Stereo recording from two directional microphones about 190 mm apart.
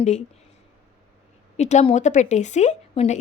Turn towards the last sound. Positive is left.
turn(degrees=35)  # may be behind; listen again after turning